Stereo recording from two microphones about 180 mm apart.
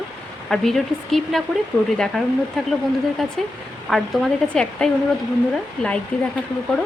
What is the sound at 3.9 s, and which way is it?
A woman's voice, centre (ahead or behind).